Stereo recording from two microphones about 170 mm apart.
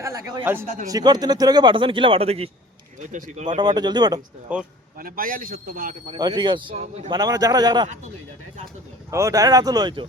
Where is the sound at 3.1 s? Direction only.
45° right (ahead or behind).